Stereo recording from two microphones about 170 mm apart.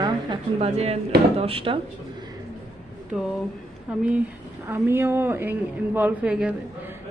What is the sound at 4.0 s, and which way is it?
Speech, 10° right (ahead or behind).